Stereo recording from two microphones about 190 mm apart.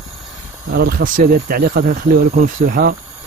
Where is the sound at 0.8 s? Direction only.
50° right (ahead or behind).